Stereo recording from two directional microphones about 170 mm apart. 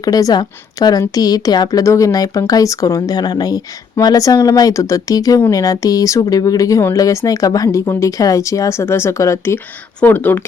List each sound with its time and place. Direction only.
0.0 s speech: 20° left (ahead or behind)